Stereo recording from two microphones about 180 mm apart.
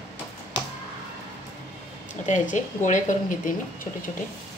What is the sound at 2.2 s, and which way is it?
Speech, 45° left (ahead or behind).